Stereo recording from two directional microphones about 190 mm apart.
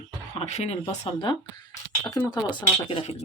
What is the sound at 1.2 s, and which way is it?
Speech, 20° left (ahead or behind).